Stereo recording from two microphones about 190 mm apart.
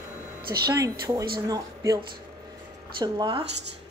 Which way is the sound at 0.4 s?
50° right (ahead or behind).